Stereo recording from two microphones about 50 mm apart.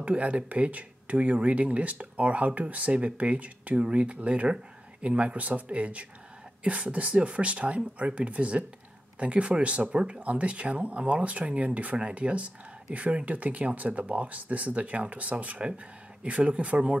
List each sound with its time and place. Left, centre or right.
0.0 s speech: right